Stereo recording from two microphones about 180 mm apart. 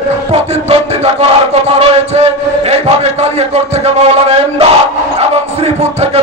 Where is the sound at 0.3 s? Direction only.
35° right (ahead or behind).